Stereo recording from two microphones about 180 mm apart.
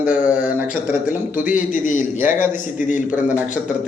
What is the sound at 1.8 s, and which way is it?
A man's voice, 45° left (ahead or behind).